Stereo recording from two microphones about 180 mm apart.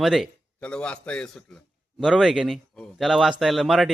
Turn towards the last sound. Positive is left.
turn(degrees=0)  # may be behind; listen again after turning